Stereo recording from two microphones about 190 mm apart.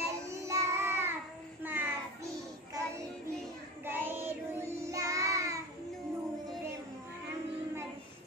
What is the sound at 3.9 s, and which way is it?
Child singing, 10° right (ahead or behind).